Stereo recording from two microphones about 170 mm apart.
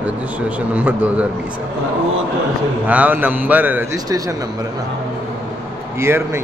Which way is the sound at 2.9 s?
10° right (ahead or behind).